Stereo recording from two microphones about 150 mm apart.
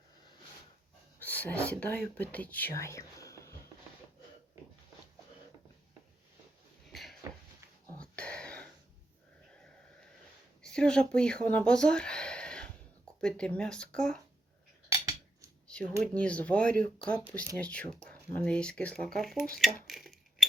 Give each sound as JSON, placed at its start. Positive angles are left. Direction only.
{"t": 1.3, "sound": "speech", "side_deg": 10}
{"t": 6.9, "sound": "a sound", "side_deg": 0}
{"t": 7.9, "sound": "throat clearing", "side_deg": 5}
{"t": 10.6, "sound": "speech", "side_deg": 5}
{"t": 14.8, "sound": "scissors", "side_deg": -20}
{"t": 16.1, "sound": "speech", "side_deg": 10}